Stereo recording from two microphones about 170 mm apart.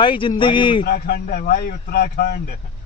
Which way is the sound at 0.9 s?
65° left (ahead or behind).